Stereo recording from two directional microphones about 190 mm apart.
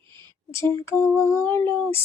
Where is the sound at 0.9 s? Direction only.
15° left (ahead or behind).